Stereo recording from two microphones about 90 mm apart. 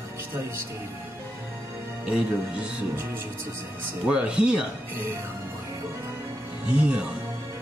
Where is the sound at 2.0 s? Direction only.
10° right (ahead or behind).